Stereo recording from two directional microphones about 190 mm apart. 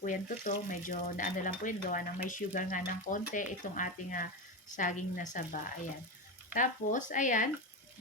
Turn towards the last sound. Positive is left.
turn(degrees=40)  # may be behind; listen again after turning